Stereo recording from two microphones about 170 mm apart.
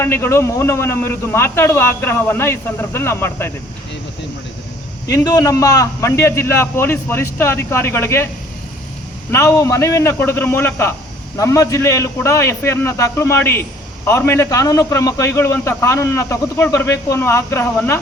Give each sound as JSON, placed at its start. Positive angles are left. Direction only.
{"t": 0.0, "sound": "a man's voice", "side_deg": 15}
{"t": 5.0, "sound": "a man's voice", "side_deg": 20}
{"t": 9.3, "sound": "a man's voice", "side_deg": 15}